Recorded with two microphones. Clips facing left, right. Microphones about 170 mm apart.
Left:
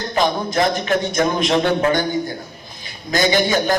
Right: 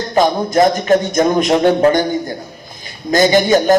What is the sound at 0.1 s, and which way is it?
A man's voice, 45° right (ahead or behind).